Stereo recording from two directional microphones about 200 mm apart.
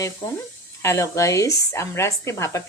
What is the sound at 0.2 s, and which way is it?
Speech, 20° left (ahead or behind).